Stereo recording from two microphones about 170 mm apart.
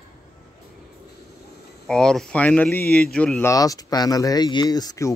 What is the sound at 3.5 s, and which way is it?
Speech, 20° left (ahead or behind).